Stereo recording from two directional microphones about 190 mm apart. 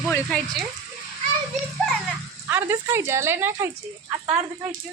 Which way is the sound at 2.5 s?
15° right (ahead or behind).